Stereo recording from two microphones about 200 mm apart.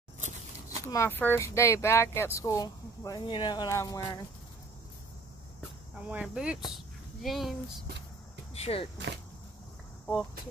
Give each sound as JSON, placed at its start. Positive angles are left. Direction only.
{"t": 0.8, "sound": "speech", "side_deg": 15}
{"t": 6.0, "sound": "speech", "side_deg": -5}
{"t": 8.5, "sound": "speech", "side_deg": 30}